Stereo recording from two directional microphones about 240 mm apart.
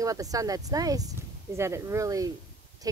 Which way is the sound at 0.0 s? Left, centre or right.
Centre.